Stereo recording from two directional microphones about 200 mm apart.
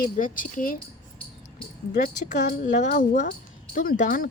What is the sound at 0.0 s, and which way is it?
Speech, 40° left (ahead or behind).